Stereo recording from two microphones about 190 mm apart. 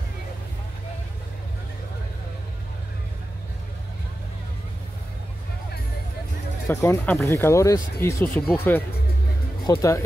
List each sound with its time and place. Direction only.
6.7 s speech: 15° left (ahead or behind)